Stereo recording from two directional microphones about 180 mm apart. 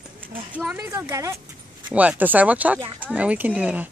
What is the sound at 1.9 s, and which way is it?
Speech, 10° right (ahead or behind).